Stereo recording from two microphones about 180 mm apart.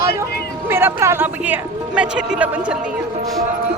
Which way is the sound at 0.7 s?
10° right (ahead or behind).